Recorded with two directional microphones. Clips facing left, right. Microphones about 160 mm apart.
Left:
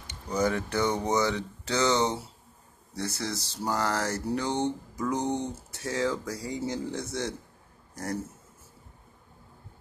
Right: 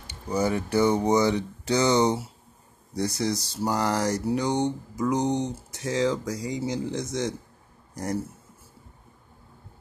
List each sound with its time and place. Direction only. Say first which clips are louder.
0.0 s speech: right 2 dB; 10° right (ahead or behind)